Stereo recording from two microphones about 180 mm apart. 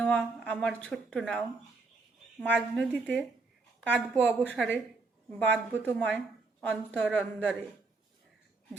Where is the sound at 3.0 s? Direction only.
10° right (ahead or behind).